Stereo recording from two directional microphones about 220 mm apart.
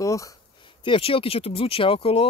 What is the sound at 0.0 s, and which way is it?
Speech, 15° left (ahead or behind).